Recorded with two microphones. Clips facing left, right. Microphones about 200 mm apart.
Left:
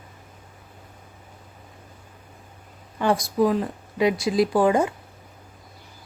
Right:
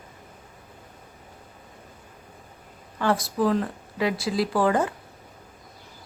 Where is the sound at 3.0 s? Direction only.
15° left (ahead or behind).